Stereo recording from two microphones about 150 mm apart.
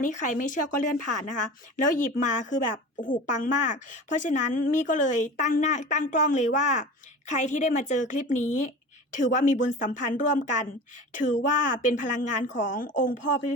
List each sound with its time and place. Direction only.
0.0 s a woman's voice: 55° left (ahead or behind)